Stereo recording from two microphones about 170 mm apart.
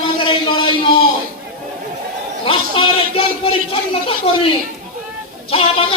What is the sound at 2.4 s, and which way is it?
A man's voice, 30° left (ahead or behind).